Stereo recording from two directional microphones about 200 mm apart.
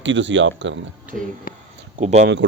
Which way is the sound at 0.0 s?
65° right (ahead or behind).